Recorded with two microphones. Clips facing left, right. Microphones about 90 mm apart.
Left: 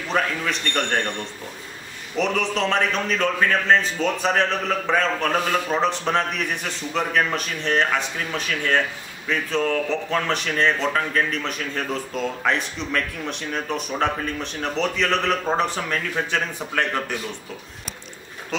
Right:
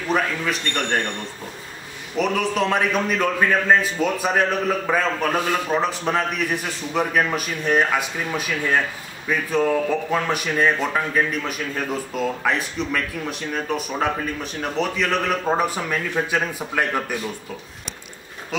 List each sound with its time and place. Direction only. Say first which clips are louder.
0.1 s speech: right 1 dB; 5° right (ahead or behind)
2.1 s speech: right 2 dB; 5° right (ahead or behind)
18.5 s speech: right 1 dB; 5° right (ahead or behind)